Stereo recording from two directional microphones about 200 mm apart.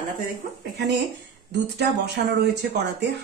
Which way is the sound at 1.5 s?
60° right (ahead or behind).